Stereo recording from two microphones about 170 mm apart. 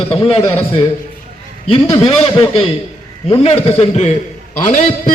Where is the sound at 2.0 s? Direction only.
35° left (ahead or behind).